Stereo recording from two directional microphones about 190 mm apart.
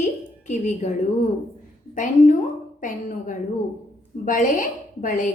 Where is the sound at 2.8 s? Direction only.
40° left (ahead or behind).